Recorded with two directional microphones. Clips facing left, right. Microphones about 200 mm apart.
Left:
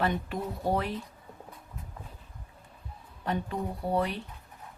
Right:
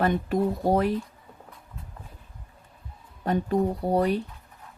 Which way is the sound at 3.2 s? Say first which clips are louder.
Right 8 dB; 40° right (ahead or behind).